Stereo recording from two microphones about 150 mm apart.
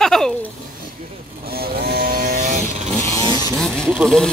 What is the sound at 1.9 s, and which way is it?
Vehicle, 70° right (ahead or behind).